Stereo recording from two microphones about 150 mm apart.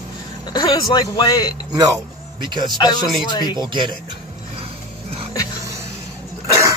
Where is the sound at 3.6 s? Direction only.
30° right (ahead or behind).